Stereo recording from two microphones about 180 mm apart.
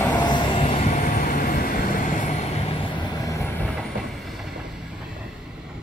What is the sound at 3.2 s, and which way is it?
Train, 15° left (ahead or behind).